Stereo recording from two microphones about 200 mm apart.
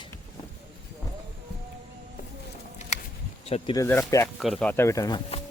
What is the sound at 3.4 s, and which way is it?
Speech, 30° left (ahead or behind).